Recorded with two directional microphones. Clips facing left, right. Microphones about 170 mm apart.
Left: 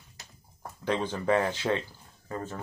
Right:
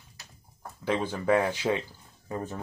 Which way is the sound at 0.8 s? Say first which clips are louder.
Right 1 dB; 5° right (ahead or behind).